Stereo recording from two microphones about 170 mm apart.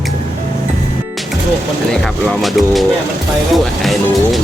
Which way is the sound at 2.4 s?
Centre (ahead or behind).